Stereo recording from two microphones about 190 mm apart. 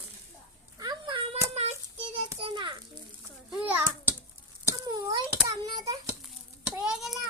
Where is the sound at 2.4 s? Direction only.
25° right (ahead or behind).